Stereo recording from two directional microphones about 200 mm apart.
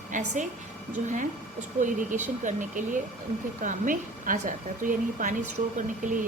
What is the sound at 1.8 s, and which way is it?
A woman's voice, 40° right (ahead or behind).